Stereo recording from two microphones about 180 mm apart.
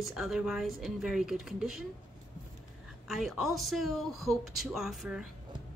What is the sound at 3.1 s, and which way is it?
Speech, centre (ahead or behind).